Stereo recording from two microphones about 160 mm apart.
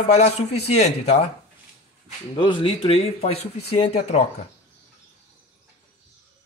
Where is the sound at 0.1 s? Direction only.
45° left (ahead or behind).